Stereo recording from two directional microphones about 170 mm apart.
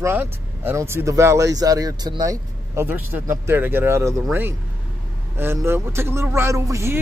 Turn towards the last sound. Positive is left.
turn(degrees=-15)  # may be behind; listen again after turning